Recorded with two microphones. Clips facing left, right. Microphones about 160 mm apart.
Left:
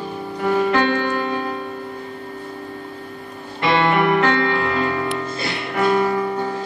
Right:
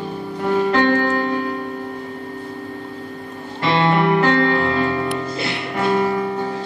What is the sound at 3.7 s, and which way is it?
Music, 30° right (ahead or behind).